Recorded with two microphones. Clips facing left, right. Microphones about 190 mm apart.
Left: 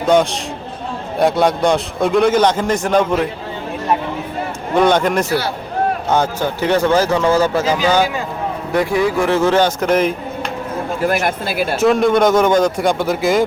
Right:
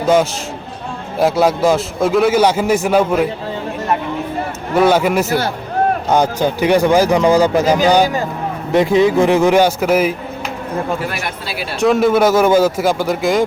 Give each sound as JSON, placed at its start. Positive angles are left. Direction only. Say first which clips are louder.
{"t": 0.1, "sound": "a man's voice", "louder": "even", "side_deg": -5}
{"t": 4.7, "sound": "a man's voice", "louder": "right 1 dB", "side_deg": -5}
{"t": 11.0, "sound": "speech", "louder": "left 6 dB", "side_deg": 45}
{"t": 11.8, "sound": "a man's voice", "louder": "right 1 dB", "side_deg": 0}